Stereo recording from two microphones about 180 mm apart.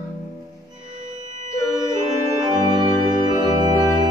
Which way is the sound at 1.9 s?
25° right (ahead or behind).